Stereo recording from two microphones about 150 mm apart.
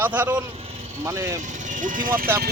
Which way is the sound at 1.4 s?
55° right (ahead or behind).